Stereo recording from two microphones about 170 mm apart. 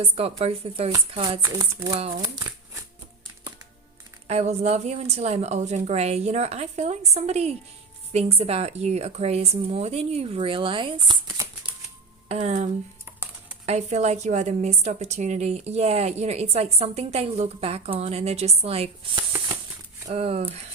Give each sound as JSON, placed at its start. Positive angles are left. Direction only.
{"t": 0.0, "sound": "a woman's voice", "side_deg": -35}
{"t": 1.4, "sound": "speech", "side_deg": -20}
{"t": 4.3, "sound": "a woman's voice", "side_deg": -40}
{"t": 12.3, "sound": "speech", "side_deg": -40}
{"t": 13.1, "sound": "a sound", "side_deg": -10}
{"t": 13.7, "sound": "a woman's voice", "side_deg": -40}